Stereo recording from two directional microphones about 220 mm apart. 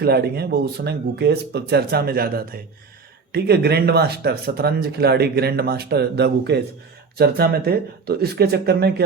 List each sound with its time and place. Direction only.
0.0 s speech: 45° right (ahead or behind)